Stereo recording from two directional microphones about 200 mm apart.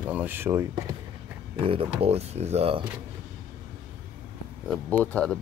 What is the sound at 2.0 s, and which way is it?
Speech, 30° right (ahead or behind).